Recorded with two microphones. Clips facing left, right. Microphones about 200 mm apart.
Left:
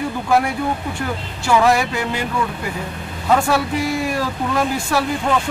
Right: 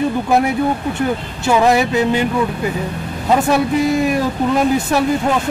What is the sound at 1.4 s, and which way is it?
Speech, 20° right (ahead or behind).